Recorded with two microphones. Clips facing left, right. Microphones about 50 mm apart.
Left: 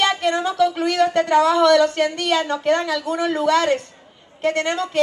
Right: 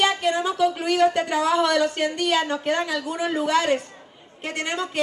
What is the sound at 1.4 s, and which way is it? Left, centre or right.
Speech, centre.